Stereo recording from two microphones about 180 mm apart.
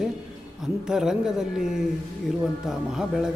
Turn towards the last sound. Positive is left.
turn(degrees=-5)  # may be behind; listen again after turning